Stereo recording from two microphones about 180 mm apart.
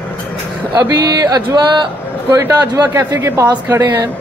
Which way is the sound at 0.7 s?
20° right (ahead or behind).